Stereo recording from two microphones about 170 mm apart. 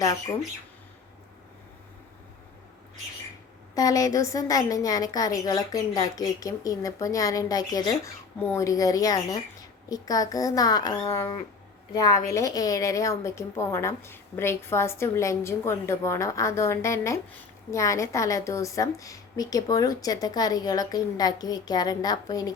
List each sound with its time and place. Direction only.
3.8 s a woman's voice: 20° left (ahead or behind)